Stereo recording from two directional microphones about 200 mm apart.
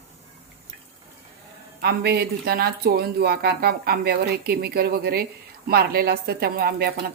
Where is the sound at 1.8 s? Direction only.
55° right (ahead or behind).